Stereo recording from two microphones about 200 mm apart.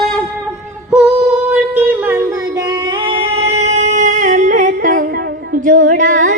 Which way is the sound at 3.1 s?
30° right (ahead or behind).